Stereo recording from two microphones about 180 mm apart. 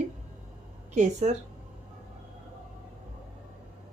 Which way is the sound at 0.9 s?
40° right (ahead or behind).